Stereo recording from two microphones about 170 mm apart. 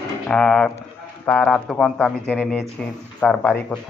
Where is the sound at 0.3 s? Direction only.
5° left (ahead or behind).